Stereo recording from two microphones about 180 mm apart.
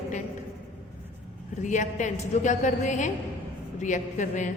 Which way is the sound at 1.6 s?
45° left (ahead or behind).